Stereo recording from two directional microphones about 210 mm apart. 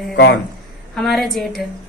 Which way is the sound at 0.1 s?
50° left (ahead or behind).